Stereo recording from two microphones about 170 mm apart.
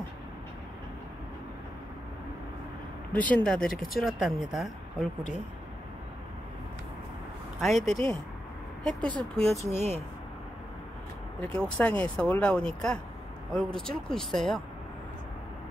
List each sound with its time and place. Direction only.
3.1 s speech: 10° left (ahead or behind)
7.6 s speech: centre (ahead or behind)
9.5 s speech: 40° right (ahead or behind)
11.4 s speech: 5° left (ahead or behind)